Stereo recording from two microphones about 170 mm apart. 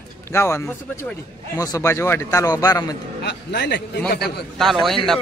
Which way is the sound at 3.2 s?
80° left.